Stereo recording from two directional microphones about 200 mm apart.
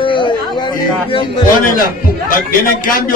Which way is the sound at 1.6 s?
45° left (ahead or behind).